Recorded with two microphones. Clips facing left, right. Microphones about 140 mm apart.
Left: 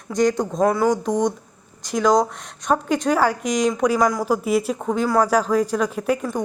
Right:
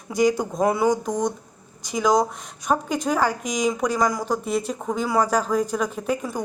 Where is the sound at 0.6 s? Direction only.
20° right (ahead or behind).